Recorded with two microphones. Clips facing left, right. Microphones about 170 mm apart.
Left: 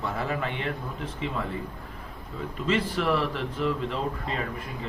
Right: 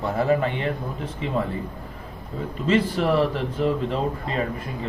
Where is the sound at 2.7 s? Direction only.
40° right (ahead or behind).